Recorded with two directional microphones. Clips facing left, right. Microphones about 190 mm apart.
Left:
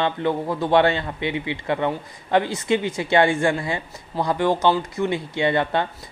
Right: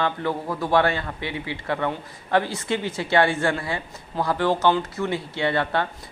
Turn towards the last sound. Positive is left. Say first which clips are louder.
# left 2 dB
turn(degrees=15)  # may be behind; listen again after turning